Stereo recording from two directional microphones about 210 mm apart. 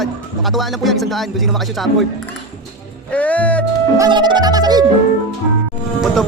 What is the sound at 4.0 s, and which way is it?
Music, 20° right (ahead or behind).